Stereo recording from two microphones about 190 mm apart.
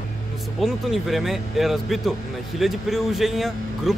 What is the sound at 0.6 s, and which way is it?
Speech, centre (ahead or behind).